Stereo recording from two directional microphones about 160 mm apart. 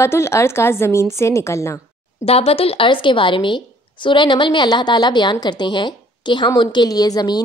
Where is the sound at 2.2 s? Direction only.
40° left (ahead or behind).